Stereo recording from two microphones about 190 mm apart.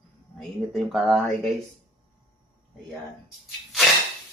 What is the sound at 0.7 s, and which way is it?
Speech, centre (ahead or behind).